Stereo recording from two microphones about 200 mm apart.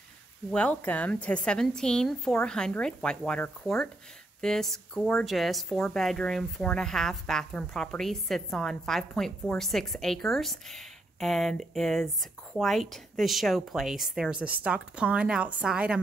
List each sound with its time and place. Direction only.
0.5 s speech: 5° left (ahead or behind)